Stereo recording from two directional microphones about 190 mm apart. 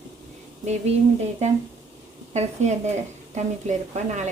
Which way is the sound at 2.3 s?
35° right (ahead or behind).